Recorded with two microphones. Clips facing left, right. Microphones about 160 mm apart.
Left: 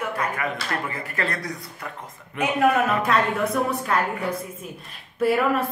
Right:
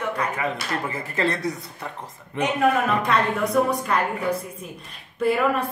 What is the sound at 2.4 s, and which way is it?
A woman's voice, 5° left (ahead or behind).